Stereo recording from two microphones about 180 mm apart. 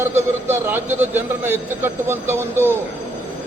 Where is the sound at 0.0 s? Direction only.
15° right (ahead or behind).